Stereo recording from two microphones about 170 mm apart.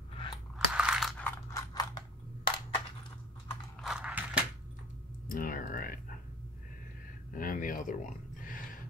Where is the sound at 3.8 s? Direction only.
5° right (ahead or behind).